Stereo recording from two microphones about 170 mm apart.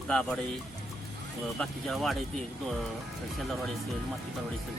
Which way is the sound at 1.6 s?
Centre (ahead or behind).